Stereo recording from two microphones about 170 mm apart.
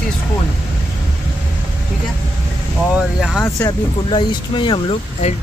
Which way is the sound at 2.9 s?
5° right (ahead or behind).